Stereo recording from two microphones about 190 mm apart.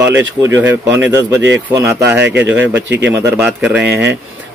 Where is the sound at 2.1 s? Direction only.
65° right (ahead or behind).